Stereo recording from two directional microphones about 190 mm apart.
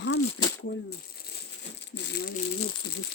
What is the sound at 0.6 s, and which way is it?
Speech, 55° left (ahead or behind).